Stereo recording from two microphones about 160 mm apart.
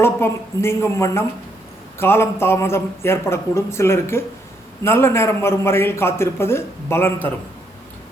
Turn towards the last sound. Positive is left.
turn(degrees=15)  # may be behind; listen again after turning